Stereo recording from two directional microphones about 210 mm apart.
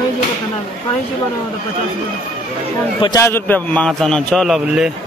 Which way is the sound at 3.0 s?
15° left (ahead or behind).